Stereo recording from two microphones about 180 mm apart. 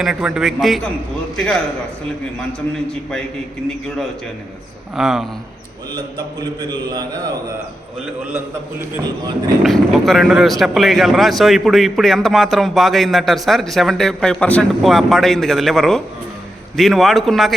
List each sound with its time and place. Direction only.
0.0 s speech: centre (ahead or behind)
4.9 s speech: centre (ahead or behind)
9.6 s speech: centre (ahead or behind)